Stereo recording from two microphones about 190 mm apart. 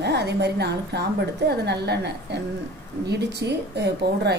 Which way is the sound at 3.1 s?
60° right (ahead or behind).